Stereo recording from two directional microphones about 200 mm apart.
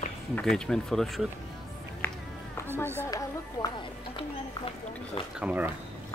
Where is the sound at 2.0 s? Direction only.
10° left (ahead or behind).